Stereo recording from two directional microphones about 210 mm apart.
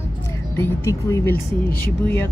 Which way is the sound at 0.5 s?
10° left (ahead or behind).